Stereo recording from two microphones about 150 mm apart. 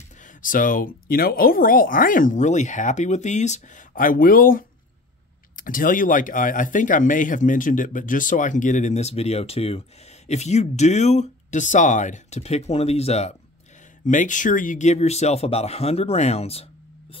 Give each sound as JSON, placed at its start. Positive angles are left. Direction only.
{"t": 0.2, "sound": "speech", "side_deg": 65}
{"t": 14.0, "sound": "speech", "side_deg": 60}